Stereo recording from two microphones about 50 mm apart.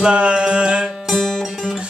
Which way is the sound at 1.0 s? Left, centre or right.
Centre.